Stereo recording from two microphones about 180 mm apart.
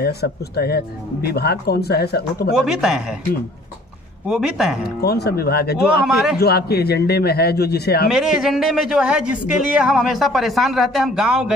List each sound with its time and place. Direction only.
0.0 s speech: 60° left (ahead or behind)
2.5 s speech: 5° right (ahead or behind)
4.3 s speech: 5° right (ahead or behind)
4.8 s speech: 60° left (ahead or behind)
6.0 s speech: centre (ahead or behind)
6.3 s speech: 60° left (ahead or behind)
8.1 s speech: centre (ahead or behind)